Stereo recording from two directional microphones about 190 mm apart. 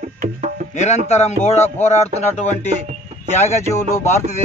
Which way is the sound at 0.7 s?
35° left (ahead or behind).